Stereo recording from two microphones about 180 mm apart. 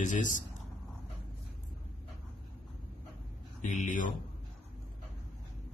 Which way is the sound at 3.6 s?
45° left (ahead or behind).